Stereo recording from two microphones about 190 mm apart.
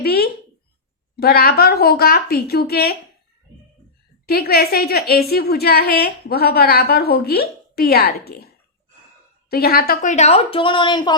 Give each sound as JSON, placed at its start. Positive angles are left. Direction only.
{"t": 0.0, "sound": "a sound", "side_deg": 55}
{"t": 1.1, "sound": "speech", "side_deg": 55}
{"t": 4.3, "sound": "a woman's voice", "side_deg": 55}
{"t": 9.5, "sound": "a woman's voice", "side_deg": 55}